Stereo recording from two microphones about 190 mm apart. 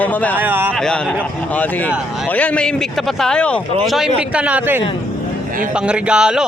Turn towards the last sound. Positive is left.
turn(degrees=-5)  # may be behind; listen again after turning